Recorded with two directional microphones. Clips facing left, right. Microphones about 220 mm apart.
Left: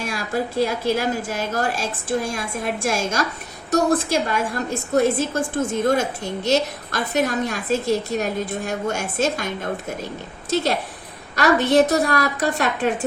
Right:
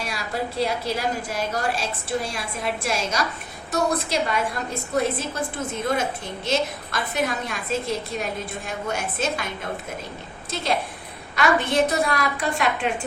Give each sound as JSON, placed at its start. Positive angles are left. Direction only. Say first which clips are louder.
{"t": 0.0, "sound": "a woman's voice", "louder": "left 4 dB", "side_deg": 50}
{"t": 10.5, "sound": "a woman's voice", "louder": "left 4 dB", "side_deg": 45}